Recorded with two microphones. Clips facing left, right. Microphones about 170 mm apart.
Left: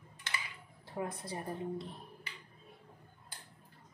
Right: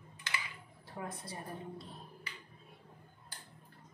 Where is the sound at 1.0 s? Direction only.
25° left (ahead or behind).